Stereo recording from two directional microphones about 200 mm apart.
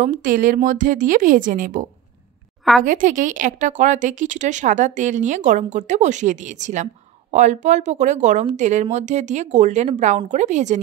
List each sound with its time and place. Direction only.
0.0 s speech: 45° right (ahead or behind)